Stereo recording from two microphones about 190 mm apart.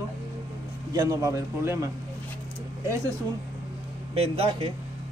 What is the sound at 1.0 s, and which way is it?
Speech, 15° right (ahead or behind).